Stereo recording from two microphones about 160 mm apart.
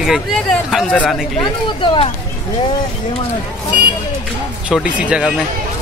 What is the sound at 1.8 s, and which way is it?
Speech, 35° left (ahead or behind).